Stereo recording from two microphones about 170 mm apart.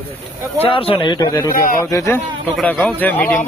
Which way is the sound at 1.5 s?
55° left (ahead or behind).